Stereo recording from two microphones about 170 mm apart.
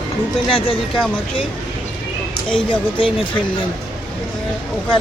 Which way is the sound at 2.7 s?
30° left (ahead or behind).